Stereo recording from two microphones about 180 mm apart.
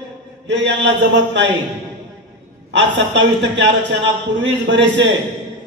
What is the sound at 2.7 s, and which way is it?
A man's voice, 80° right.